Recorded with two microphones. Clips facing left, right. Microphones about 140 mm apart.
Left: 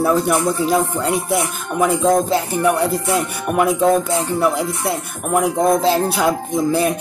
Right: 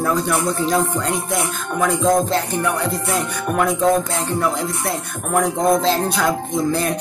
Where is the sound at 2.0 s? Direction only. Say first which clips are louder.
Left 1 dB; centre (ahead or behind).